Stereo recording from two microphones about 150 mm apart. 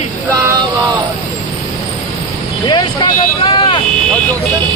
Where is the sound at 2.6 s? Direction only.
30° left (ahead or behind).